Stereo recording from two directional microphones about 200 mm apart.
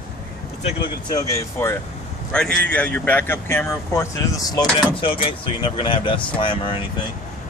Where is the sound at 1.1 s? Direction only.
15° left (ahead or behind).